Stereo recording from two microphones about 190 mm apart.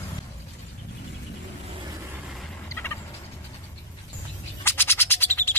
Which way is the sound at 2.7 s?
15° left (ahead or behind).